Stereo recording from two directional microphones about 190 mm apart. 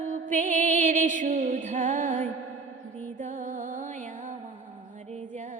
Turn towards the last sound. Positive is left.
turn(degrees=-40)  # may be behind; listen again after turning